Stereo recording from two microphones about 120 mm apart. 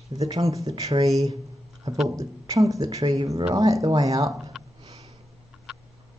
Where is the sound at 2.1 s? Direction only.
30° right (ahead or behind).